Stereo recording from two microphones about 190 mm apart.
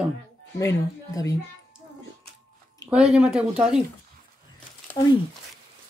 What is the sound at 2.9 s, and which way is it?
Speech, 5° right (ahead or behind).